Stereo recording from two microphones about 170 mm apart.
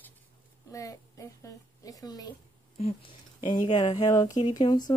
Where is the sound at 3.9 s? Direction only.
20° left (ahead or behind).